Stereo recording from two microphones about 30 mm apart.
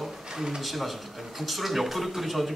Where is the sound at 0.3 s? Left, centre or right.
Right.